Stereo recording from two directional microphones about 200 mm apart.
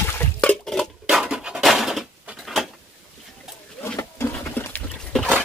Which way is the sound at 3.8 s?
10° left (ahead or behind).